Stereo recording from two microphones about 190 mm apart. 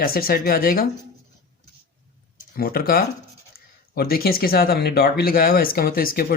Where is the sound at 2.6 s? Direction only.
50° left (ahead or behind).